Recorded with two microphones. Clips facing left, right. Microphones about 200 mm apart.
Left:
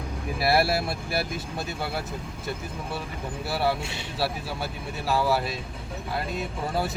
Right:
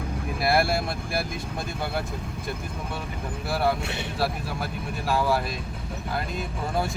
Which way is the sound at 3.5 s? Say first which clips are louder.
Right 2 dB; 5° left (ahead or behind).